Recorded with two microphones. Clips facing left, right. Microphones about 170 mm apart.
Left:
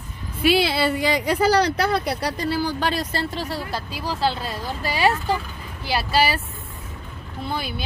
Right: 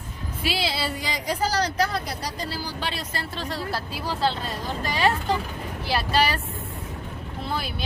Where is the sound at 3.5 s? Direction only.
Centre (ahead or behind).